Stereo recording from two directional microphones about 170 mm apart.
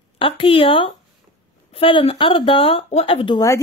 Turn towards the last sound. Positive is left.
turn(degrees=20)  # may be behind; listen again after turning